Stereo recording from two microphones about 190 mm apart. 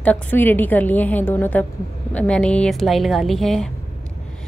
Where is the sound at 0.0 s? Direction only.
10° left (ahead or behind).